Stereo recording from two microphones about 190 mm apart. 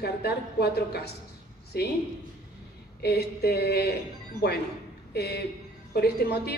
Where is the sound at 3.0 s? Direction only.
55° left (ahead or behind).